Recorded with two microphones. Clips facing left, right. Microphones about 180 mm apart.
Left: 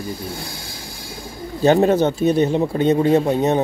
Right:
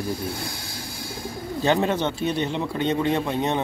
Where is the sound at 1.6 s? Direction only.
40° left (ahead or behind).